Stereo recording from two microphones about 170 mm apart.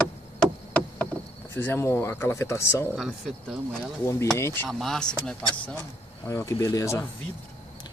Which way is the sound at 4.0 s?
15° left (ahead or behind).